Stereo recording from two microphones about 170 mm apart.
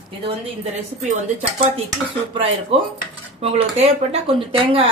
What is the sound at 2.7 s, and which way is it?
Speech, 35° right (ahead or behind).